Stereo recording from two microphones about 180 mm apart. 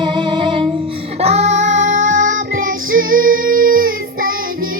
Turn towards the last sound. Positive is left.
turn(degrees=-50)  # may be behind; listen again after turning